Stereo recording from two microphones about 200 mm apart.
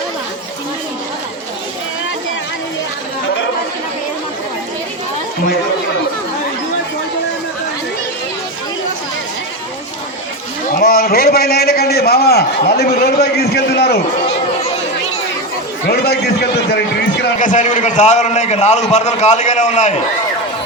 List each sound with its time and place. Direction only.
10.7 s a man's voice: 45° left (ahead or behind)
15.9 s a man's voice: 55° left (ahead or behind)
17.4 s a man's voice: 40° left (ahead or behind)